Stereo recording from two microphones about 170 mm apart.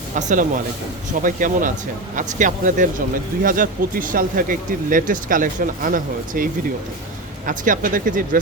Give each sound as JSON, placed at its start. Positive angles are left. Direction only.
{"t": 0.2, "sound": "speech", "side_deg": -45}